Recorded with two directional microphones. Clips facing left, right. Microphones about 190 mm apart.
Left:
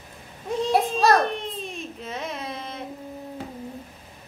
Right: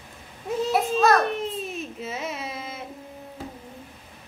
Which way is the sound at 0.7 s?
35° left (ahead or behind).